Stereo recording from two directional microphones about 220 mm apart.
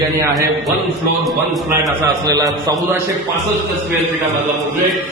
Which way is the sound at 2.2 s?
15° right (ahead or behind).